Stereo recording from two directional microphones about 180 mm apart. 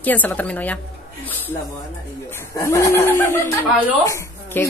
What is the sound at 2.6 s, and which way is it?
Speech, 15° left (ahead or behind).